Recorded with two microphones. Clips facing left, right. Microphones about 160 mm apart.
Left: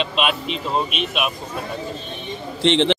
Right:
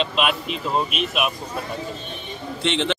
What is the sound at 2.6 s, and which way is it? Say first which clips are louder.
Speech: left 6 dB; 30° left (ahead or behind).